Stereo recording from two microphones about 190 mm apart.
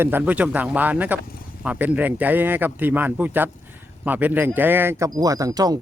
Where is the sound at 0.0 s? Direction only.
10° right (ahead or behind).